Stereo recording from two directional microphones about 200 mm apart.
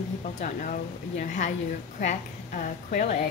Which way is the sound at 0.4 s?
40° left (ahead or behind).